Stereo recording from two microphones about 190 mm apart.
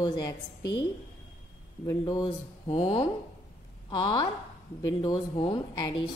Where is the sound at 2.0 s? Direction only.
25° left (ahead or behind).